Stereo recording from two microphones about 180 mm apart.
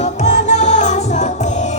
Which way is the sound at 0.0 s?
40° left (ahead or behind).